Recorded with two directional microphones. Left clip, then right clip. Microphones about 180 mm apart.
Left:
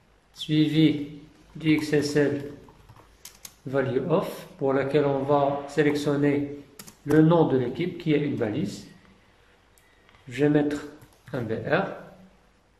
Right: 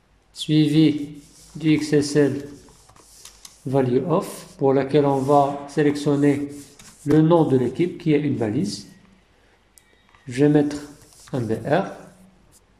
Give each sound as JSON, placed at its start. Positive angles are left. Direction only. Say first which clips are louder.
{"t": 0.3, "sound": "speech", "louder": "right 5 dB", "side_deg": -30}
{"t": 3.6, "sound": "speech", "louder": "right 5 dB", "side_deg": -30}
{"t": 10.2, "sound": "speech", "louder": "right 5 dB", "side_deg": -30}